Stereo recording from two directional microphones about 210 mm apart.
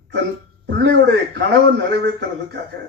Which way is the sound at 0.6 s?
55° right (ahead or behind).